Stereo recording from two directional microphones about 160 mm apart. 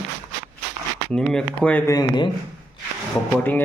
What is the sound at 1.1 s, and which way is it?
Speech, 5° left (ahead or behind).